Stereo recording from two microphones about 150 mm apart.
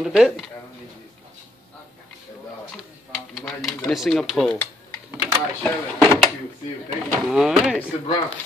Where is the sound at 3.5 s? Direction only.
Centre (ahead or behind).